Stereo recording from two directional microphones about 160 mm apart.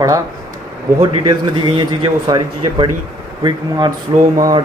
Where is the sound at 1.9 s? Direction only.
25° right (ahead or behind).